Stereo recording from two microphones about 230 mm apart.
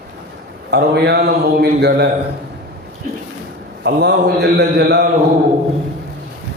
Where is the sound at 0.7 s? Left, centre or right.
Right.